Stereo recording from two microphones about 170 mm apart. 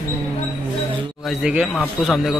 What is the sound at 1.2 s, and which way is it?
Speech, 5° right (ahead or behind).